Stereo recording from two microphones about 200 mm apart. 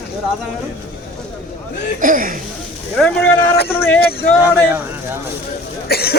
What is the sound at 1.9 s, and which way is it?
Speech, 40° right (ahead or behind).